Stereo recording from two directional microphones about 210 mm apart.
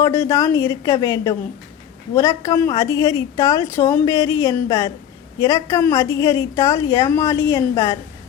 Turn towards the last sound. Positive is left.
turn(degrees=25)  # may be behind; listen again after turning